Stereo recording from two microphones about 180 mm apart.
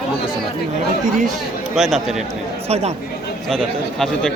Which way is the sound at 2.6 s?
35° right (ahead or behind).